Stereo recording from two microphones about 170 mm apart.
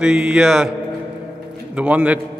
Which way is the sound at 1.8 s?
10° right (ahead or behind).